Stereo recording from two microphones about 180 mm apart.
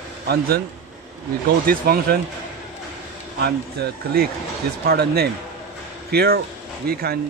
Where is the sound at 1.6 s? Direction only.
55° right (ahead or behind).